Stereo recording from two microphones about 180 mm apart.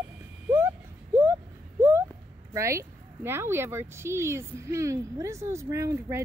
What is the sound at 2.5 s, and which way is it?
Speech, 15° right (ahead or behind).